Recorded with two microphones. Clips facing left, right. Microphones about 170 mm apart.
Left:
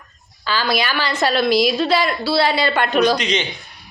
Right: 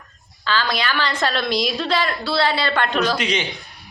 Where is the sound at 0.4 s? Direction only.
10° left (ahead or behind).